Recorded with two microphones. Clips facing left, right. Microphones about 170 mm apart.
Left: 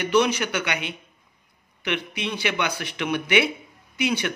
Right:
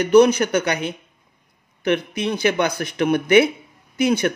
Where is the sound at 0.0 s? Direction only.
45° right (ahead or behind).